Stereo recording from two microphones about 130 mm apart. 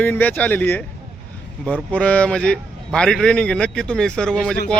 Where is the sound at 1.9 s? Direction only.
10° left (ahead or behind).